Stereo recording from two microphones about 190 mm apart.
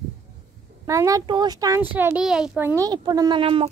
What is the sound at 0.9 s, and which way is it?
Speech, 15° right (ahead or behind).